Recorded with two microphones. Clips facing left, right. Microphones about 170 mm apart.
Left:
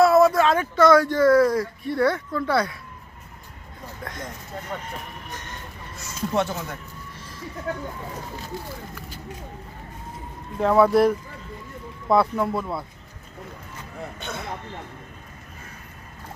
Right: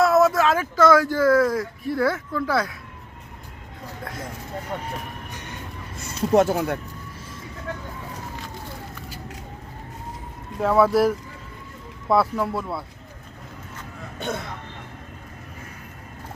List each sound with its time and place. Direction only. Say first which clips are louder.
0.0 s speech: left 2 dB; centre (ahead or behind)
4.0 s speech: even; 5° right (ahead or behind)
5.3 s music: even; 15° right (ahead or behind)
6.0 s speech: right 6 dB; 55° right (ahead or behind)
10.6 s speech: left 1 dB; centre (ahead or behind)